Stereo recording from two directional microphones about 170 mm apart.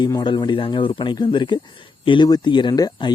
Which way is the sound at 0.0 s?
25° left (ahead or behind).